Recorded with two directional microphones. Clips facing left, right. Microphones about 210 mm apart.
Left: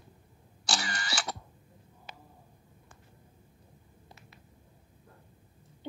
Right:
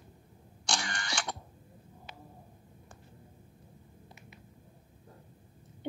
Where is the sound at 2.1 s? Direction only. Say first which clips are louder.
Left 1 dB; 40° left (ahead or behind).